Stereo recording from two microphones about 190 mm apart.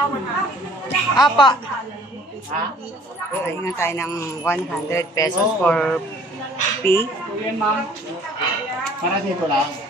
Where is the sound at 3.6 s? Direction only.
15° left (ahead or behind).